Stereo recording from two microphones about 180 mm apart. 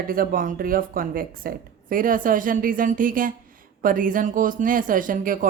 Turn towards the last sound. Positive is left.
turn(degrees=-50)  # may be behind; listen again after turning